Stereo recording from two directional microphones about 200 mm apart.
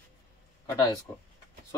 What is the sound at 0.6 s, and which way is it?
Speech, 20° left (ahead or behind).